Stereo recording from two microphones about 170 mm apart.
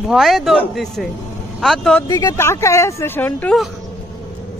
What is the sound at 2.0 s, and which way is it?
Speech, 20° left (ahead or behind).